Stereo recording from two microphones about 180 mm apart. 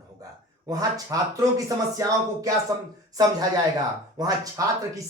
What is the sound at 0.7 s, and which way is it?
Speech, 20° right (ahead or behind).